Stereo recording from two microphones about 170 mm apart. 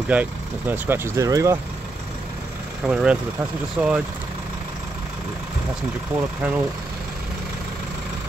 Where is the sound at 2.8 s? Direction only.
5° right (ahead or behind).